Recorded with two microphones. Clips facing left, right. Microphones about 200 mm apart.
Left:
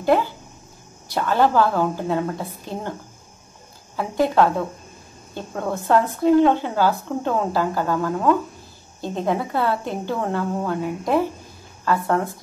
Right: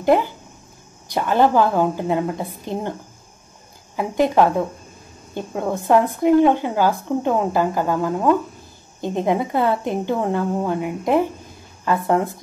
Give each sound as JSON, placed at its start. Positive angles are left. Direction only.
{"t": 0.0, "sound": "a woman's voice", "side_deg": -15}
{"t": 3.9, "sound": "a woman's voice", "side_deg": -15}